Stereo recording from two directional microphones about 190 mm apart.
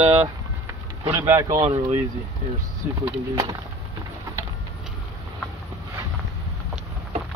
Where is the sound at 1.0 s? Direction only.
15° right (ahead or behind).